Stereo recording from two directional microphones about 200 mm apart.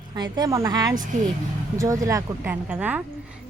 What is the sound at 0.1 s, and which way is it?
A woman's voice, 20° right (ahead or behind).